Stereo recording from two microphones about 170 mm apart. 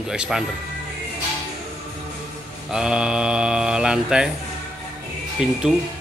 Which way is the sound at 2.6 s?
5° right (ahead or behind).